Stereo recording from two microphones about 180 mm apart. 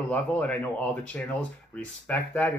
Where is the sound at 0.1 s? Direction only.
10° left (ahead or behind).